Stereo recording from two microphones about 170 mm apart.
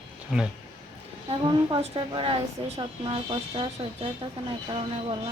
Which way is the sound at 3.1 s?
30° right (ahead or behind).